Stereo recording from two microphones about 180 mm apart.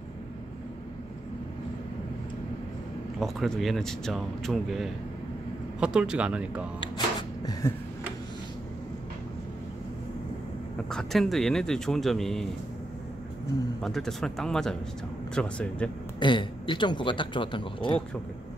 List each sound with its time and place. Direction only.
3.2 s speech: centre (ahead or behind)
6.8 s cupboard open or close: 25° left (ahead or behind)
10.9 s speech: centre (ahead or behind)
13.7 s speech: centre (ahead or behind)
16.2 s speech: 25° left (ahead or behind)